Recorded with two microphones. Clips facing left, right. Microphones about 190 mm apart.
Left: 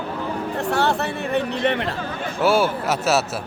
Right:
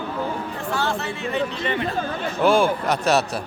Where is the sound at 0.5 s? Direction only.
65° left (ahead or behind).